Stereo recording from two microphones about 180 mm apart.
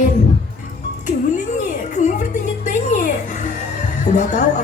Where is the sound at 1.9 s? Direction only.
40° left (ahead or behind).